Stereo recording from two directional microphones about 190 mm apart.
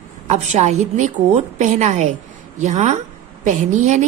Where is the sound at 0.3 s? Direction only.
35° right (ahead or behind).